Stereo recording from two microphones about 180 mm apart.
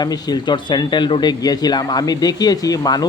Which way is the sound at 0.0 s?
20° left (ahead or behind).